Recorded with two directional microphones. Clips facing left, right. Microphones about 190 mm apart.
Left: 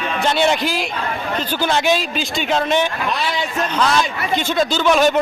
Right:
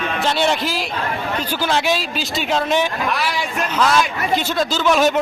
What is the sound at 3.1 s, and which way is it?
Speech, 20° left (ahead or behind).